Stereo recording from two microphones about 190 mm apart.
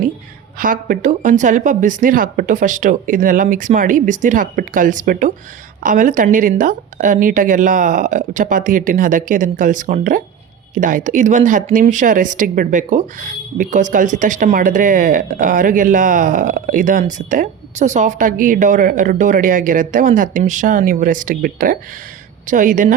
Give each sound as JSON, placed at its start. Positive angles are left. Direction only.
{"t": 0.6, "sound": "speech", "side_deg": -45}